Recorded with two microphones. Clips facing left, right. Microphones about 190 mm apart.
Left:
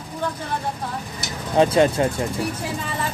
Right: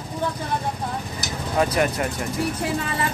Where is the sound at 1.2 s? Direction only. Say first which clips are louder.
Left 5 dB; 25° left (ahead or behind).